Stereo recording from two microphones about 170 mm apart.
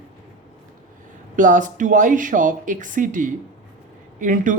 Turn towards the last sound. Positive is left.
turn(degrees=-50)  # may be behind; listen again after turning